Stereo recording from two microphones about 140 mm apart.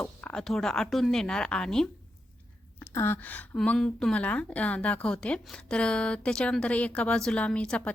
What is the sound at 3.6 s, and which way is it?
A woman's voice, 5° left (ahead or behind).